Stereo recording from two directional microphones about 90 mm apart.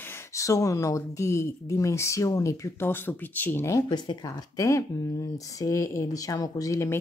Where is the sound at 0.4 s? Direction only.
35° left (ahead or behind).